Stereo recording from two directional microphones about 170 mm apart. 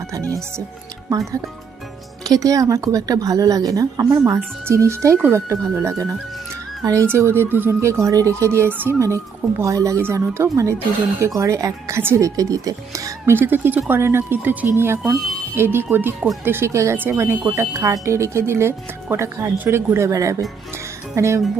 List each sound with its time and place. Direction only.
0.3 s speech: 15° right (ahead or behind)
2.2 s a woman's voice: 20° right (ahead or behind)